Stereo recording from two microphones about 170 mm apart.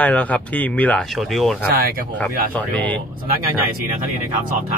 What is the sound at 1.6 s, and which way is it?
Speech, 65° right (ahead or behind).